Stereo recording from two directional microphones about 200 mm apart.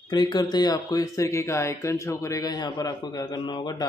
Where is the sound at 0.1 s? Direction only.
20° left (ahead or behind).